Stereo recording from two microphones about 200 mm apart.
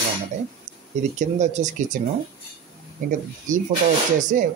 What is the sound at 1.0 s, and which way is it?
Speech, 35° right (ahead or behind).